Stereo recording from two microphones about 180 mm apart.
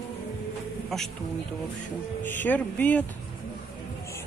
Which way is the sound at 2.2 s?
10° left (ahead or behind).